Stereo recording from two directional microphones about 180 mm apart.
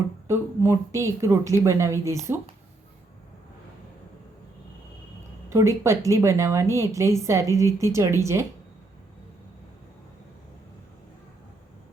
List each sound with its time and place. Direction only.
0.3 s a woman's voice: 15° right (ahead or behind)
5.5 s a woman's voice: 15° right (ahead or behind)